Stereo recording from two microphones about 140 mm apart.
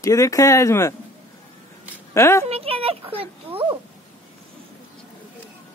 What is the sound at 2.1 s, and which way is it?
Speech, 20° left (ahead or behind).